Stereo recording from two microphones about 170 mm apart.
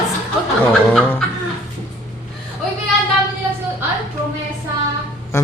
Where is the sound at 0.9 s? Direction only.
5° left (ahead or behind).